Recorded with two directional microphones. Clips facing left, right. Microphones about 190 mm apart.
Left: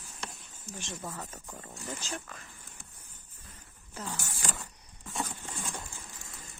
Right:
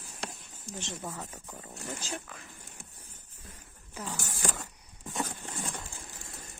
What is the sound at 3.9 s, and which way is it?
Speech, 10° right (ahead or behind).